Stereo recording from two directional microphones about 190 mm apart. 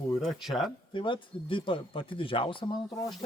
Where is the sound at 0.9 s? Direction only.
25° left (ahead or behind).